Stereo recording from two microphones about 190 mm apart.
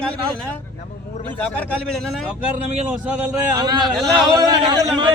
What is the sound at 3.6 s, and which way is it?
A man's voice, 20° right (ahead or behind).